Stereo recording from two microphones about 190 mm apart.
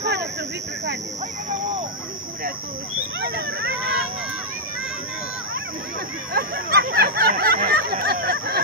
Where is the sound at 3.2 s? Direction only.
60° right (ahead or behind).